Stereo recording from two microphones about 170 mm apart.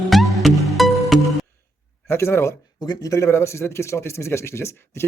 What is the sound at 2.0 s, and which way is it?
Speech, 15° left (ahead or behind).